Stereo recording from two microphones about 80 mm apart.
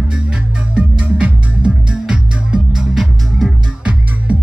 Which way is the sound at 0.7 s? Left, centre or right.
Centre.